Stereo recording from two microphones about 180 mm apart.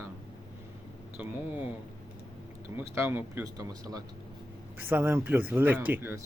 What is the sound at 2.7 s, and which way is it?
Speech, 15° right (ahead or behind).